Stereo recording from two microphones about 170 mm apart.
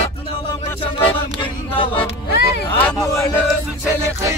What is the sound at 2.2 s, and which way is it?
Music, 75° left (ahead or behind).